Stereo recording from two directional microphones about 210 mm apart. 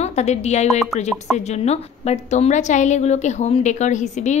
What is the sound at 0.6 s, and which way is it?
Speech, centre (ahead or behind).